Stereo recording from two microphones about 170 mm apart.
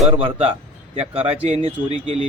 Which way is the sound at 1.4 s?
40° right (ahead or behind).